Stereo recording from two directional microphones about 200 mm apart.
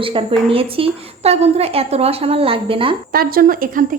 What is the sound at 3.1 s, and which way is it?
Speech, 45° right (ahead or behind).